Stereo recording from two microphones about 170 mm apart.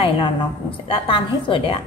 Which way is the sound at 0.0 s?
30° left (ahead or behind).